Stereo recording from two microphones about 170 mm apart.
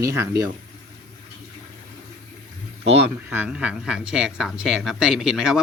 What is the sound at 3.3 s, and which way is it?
Speech, 10° right (ahead or behind).